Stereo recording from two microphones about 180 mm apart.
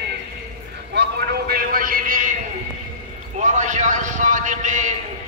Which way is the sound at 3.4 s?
40° right (ahead or behind).